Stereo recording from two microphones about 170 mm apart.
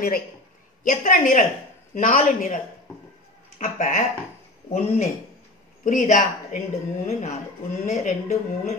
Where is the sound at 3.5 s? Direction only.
50° left (ahead or behind).